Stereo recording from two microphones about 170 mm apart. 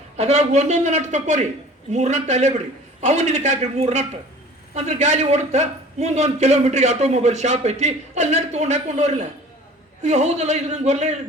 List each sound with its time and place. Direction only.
0.2 s a man's voice: 40° right (ahead or behind)